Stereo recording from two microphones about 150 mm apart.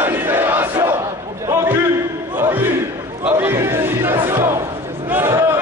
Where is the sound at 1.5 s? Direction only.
20° right (ahead or behind).